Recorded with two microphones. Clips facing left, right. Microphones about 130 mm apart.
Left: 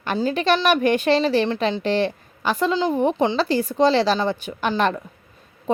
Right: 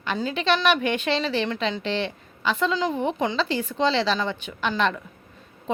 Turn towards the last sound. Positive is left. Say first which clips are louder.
# left 3 dB
turn(degrees=40)  # may be behind; listen again after turning